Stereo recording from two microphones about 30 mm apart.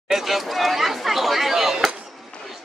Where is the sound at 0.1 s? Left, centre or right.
Centre.